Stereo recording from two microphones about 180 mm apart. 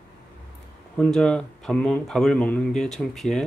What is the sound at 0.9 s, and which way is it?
Speech, 5° left (ahead or behind).